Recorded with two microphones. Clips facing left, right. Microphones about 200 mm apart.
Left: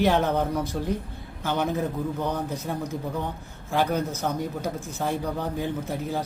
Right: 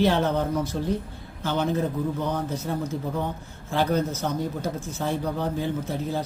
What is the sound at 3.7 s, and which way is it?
Speech, 15° left (ahead or behind).